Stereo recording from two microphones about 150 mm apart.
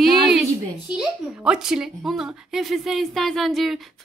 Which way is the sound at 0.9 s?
5° right (ahead or behind).